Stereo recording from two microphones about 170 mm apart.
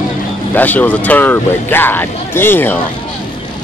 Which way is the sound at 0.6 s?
10° left (ahead or behind).